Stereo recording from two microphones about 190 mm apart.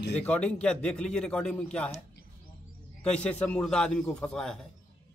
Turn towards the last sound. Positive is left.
turn(degrees=5)  # may be behind; listen again after turning